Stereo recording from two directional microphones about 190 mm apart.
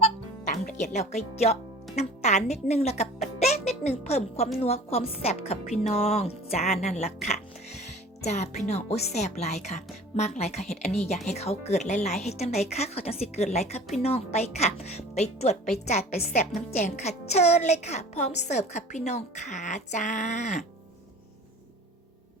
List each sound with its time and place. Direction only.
0.0 s music: 40° left (ahead or behind)
2.0 s a woman's voice: 35° left (ahead or behind)
16.0 s a woman's voice: 55° left (ahead or behind)
16.7 s a woman's voice: 35° left (ahead or behind)